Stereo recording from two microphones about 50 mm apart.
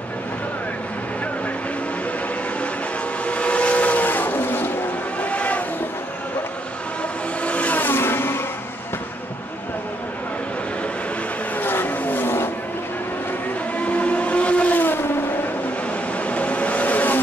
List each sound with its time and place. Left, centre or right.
3.3 s vehicle: left
5.2 s vehicle: left
7.4 s vehicle: left
7.8 s vehicle: left
11.5 s vehicle: left
13.7 s vehicle: left
16.2 s vehicle: left